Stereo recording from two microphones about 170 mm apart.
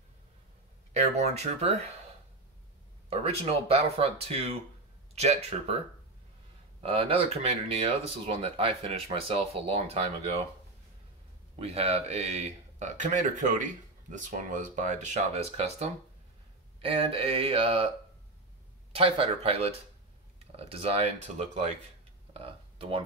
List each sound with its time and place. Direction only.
0.9 s speech: 40° right (ahead or behind)
3.1 s speech: 35° right (ahead or behind)
6.8 s speech: 35° right (ahead or behind)
11.5 s speech: 35° right (ahead or behind)
18.9 s speech: 30° right (ahead or behind)
22.3 s a sound: 35° right (ahead or behind)